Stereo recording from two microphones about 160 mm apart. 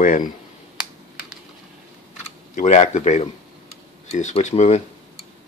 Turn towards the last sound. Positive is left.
turn(degrees=45)  # may be behind; listen again after turning